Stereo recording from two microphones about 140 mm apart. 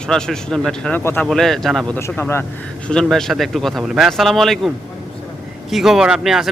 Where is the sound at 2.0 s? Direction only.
15° left (ahead or behind).